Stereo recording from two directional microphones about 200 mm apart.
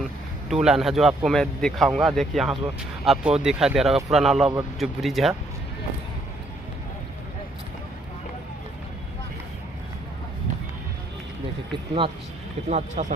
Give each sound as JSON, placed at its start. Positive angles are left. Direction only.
{"t": 0.5, "sound": "speech", "side_deg": 0}
{"t": 12.6, "sound": "speech", "side_deg": -35}